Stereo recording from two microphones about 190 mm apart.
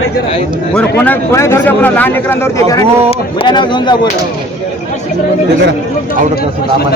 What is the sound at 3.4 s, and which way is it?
Speech, 25° left (ahead or behind).